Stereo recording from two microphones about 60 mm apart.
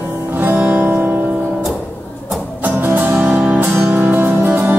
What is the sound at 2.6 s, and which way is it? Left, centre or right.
Music, right.